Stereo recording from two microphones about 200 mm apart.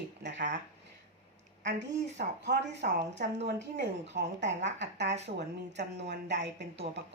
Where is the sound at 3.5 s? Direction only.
55° right (ahead or behind).